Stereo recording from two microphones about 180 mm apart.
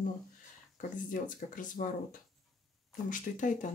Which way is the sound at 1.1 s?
50° left (ahead or behind).